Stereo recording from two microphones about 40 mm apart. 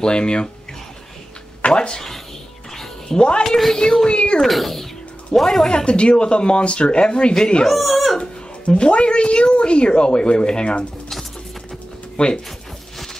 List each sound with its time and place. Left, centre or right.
0.0 s speech: left
1.7 s speech: centre
2.7 s cat: centre
3.2 s speech: left
3.4 s speech: centre
3.7 s speech: centre
4.1 s speech: left
4.4 s speech: centre
5.7 s speech: left
7.6 s speech: centre
8.2 s speech: left
12.2 s speech: left